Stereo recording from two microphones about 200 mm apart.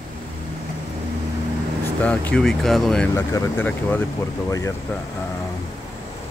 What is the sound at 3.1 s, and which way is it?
Speech, 15° left (ahead or behind).